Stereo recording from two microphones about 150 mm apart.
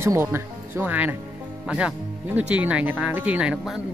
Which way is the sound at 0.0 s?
15° right (ahead or behind).